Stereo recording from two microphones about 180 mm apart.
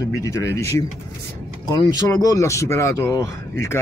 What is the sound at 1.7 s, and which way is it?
Speech, 20° left (ahead or behind).